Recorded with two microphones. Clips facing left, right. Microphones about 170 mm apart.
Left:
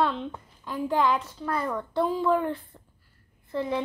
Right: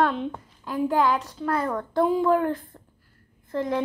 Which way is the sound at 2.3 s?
45° right (ahead or behind).